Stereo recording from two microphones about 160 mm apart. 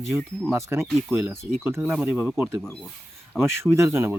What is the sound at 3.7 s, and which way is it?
Speech, 15° right (ahead or behind).